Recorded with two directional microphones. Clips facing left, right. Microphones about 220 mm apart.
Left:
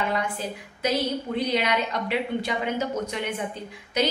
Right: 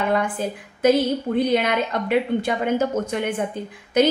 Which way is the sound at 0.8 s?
50° right (ahead or behind).